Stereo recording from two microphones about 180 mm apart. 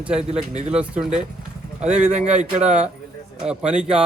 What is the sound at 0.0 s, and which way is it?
Speech, 5° right (ahead or behind).